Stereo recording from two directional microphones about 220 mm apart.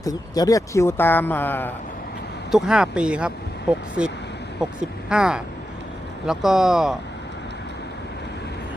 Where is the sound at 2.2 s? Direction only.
50° left (ahead or behind).